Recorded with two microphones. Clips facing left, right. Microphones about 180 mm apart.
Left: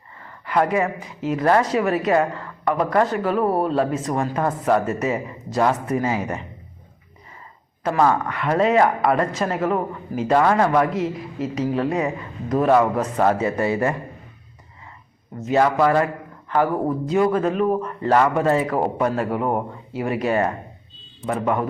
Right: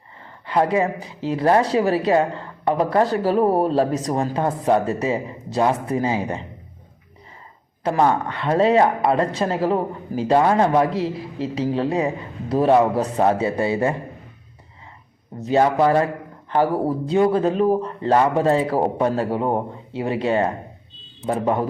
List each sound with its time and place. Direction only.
0.2 s speech: 25° right (ahead or behind)
7.9 s speech: 25° right (ahead or behind)
15.4 s speech: 30° right (ahead or behind)